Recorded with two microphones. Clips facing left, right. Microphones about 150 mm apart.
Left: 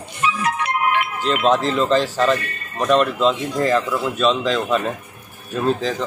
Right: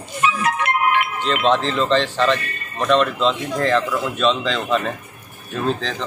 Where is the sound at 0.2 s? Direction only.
65° right (ahead or behind).